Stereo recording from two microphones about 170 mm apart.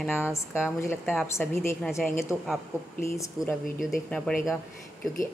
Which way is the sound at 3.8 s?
Centre (ahead or behind).